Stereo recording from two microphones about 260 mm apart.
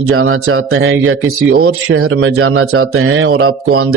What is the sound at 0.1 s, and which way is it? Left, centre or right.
A man's voice, right.